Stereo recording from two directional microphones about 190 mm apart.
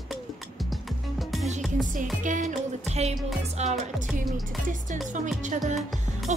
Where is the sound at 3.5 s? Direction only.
35° right (ahead or behind).